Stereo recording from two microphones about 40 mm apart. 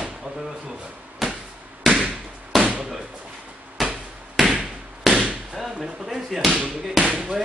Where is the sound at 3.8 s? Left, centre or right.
Centre.